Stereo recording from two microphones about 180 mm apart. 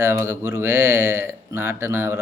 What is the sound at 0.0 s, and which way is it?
Speech, 15° right (ahead or behind).